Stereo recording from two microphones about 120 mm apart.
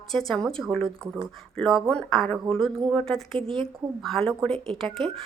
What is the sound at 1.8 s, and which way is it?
Speech, 5° left (ahead or behind).